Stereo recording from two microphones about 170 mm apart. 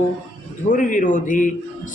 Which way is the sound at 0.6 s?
50° left (ahead or behind).